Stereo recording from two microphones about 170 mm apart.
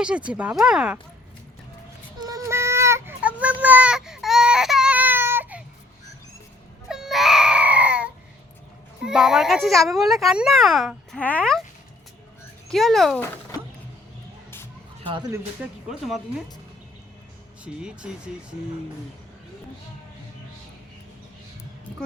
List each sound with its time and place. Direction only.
0.0 s a child's voice: 5° right (ahead or behind)
2.2 s a sound: 20° right (ahead or behind)
3.6 s baby cry: 10° right (ahead or behind)
6.8 s baby cry: 5° right (ahead or behind)
9.0 s a child's voice: 5° right (ahead or behind)
12.6 s speech: centre (ahead or behind)
15.0 s speech: 30° right (ahead or behind)
15.9 s a child's voice: centre (ahead or behind)
17.6 s a child's voice: 5° right (ahead or behind)